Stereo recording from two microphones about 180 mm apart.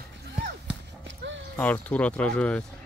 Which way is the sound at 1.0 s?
90° right.